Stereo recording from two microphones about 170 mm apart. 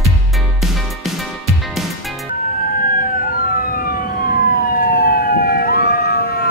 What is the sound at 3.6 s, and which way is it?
Emergency vehicle, 55° left (ahead or behind).